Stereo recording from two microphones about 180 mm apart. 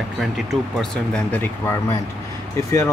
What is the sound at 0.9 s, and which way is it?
Speech, 5° left (ahead or behind).